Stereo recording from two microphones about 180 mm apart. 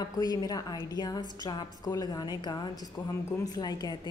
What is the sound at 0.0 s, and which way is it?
A woman's voice, 20° left (ahead or behind).